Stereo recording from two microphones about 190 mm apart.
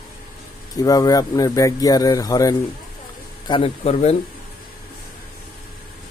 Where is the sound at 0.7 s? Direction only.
20° left (ahead or behind).